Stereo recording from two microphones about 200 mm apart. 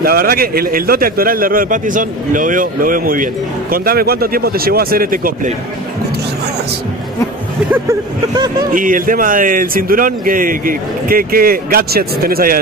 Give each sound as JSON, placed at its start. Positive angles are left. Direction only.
{"t": 0.0, "sound": "speech", "side_deg": -50}
{"t": 8.7, "sound": "speech", "side_deg": -45}